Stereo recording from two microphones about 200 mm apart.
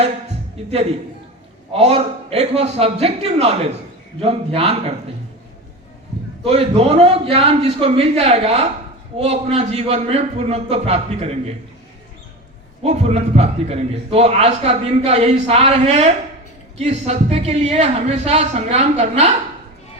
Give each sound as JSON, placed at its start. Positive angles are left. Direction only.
{"t": 0.6, "sound": "a man's voice", "side_deg": -30}
{"t": 6.4, "sound": "a man's voice", "side_deg": -30}
{"t": 12.8, "sound": "a man's voice", "side_deg": -35}